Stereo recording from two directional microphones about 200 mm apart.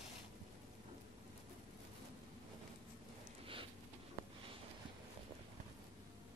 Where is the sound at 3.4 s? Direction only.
25° right (ahead or behind).